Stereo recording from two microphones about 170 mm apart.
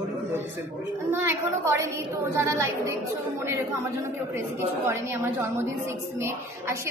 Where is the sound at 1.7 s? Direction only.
15° right (ahead or behind).